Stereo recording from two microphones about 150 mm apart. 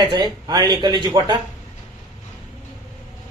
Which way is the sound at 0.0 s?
25° right (ahead or behind).